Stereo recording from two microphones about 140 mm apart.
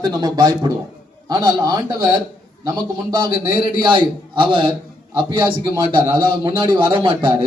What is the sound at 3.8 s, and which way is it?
A man's voice, 35° right (ahead or behind).